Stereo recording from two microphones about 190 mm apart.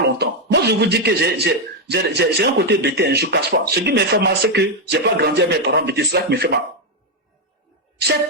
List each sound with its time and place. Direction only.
0.2 s speech: 60° right (ahead or behind)